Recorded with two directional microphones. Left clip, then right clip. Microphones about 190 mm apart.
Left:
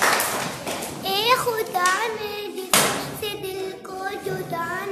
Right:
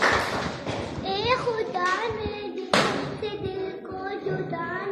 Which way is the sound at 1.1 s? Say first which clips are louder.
Left 4 dB; 25° left (ahead or behind).